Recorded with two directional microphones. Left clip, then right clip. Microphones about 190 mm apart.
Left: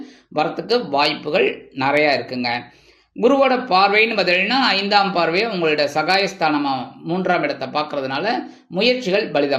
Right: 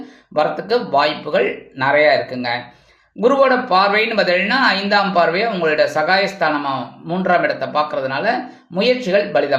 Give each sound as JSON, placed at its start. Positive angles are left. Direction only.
{"t": 0.3, "sound": "speech", "side_deg": 30}